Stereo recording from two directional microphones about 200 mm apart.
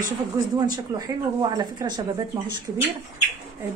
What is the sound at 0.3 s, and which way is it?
A woman's voice, 15° right (ahead or behind).